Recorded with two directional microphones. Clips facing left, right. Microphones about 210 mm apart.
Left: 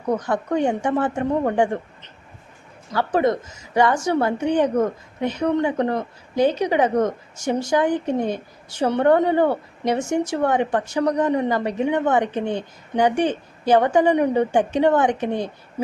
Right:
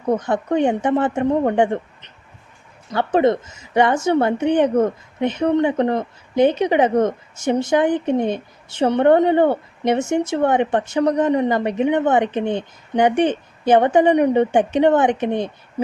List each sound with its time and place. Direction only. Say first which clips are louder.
0.1 s a woman's voice: right 3 dB; 20° right (ahead or behind)